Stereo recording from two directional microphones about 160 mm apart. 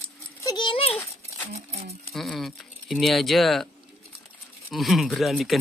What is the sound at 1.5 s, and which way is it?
Speech, 40° right (ahead or behind).